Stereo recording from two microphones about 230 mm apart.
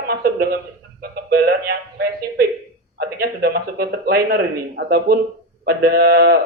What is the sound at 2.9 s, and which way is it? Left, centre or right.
A man's voice, right.